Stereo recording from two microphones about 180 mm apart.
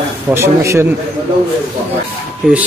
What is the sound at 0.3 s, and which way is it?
Speech, 15° right (ahead or behind).